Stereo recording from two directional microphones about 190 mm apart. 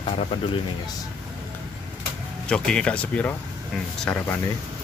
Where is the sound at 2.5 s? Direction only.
5° left (ahead or behind).